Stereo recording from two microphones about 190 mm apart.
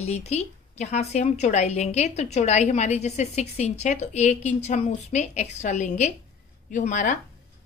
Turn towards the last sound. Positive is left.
turn(degrees=40)  # may be behind; listen again after turning